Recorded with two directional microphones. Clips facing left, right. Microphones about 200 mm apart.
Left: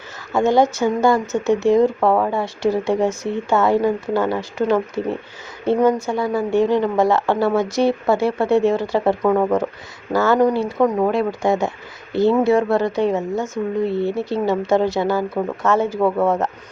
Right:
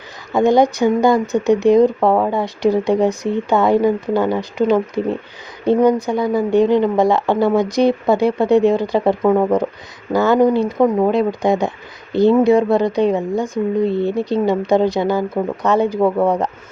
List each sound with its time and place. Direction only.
0.3 s speech: 15° right (ahead or behind)